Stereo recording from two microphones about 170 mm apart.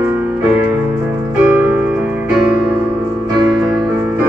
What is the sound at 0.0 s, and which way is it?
Music, 15° right (ahead or behind).